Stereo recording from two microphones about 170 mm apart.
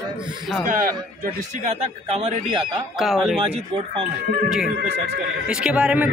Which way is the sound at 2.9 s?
Centre (ahead or behind).